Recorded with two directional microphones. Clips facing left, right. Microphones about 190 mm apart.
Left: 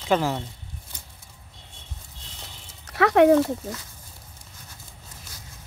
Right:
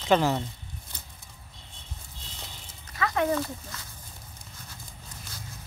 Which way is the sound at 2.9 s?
70° left (ahead or behind).